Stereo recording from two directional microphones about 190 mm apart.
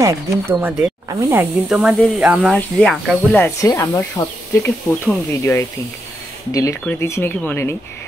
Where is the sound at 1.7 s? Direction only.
5° right (ahead or behind).